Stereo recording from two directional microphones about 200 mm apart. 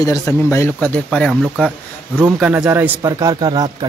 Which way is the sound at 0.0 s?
15° left (ahead or behind).